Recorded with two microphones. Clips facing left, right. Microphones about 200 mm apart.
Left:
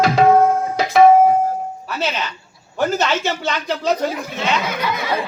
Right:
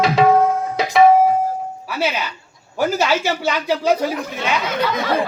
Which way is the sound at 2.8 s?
10° right (ahead or behind).